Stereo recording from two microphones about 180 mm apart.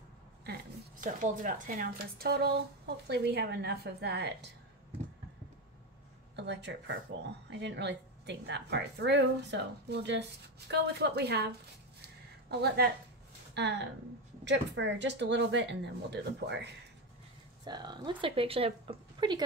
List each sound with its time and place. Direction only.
1.0 s speech: 45° right (ahead or behind); by 4.5 s 65° right (ahead or behind)
6.3 s a woman's voice: 75° right (ahead or behind)
14.4 s a woman's voice: 80° right
17.6 s speech: 25° right (ahead or behind)